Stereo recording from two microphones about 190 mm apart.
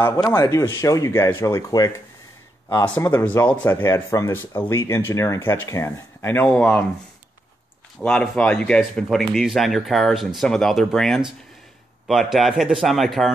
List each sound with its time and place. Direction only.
0.0 s speech: 10° left (ahead or behind)
8.0 s speech: 5° left (ahead or behind)